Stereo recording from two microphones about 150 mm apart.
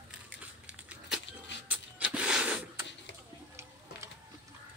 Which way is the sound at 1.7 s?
10° right (ahead or behind).